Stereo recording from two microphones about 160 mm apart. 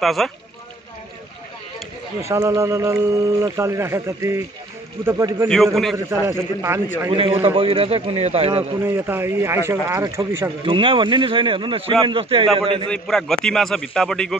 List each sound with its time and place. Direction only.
0.0 s a man's voice: centre (ahead or behind)
2.2 s speech: 15° right (ahead or behind)
7.1 s speech: 30° right (ahead or behind)
8.8 s speech: 15° right (ahead or behind)
10.6 s speech: 35° right (ahead or behind)
12.9 s a man's voice: 5° left (ahead or behind)